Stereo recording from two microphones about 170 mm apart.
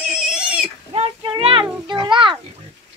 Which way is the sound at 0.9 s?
35° right (ahead or behind).